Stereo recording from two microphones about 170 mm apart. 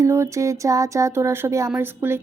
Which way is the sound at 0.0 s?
15° right (ahead or behind).